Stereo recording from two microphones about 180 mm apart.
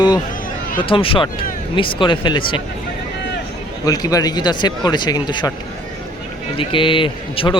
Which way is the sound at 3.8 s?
20° left (ahead or behind).